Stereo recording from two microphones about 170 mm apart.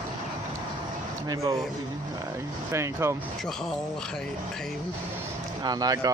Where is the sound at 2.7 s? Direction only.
15° right (ahead or behind).